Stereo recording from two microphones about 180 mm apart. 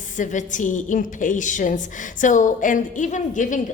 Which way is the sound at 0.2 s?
45° left (ahead or behind).